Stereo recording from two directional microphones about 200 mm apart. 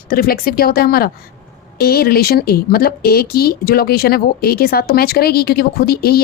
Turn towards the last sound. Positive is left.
turn(degrees=50)  # may be behind; listen again after turning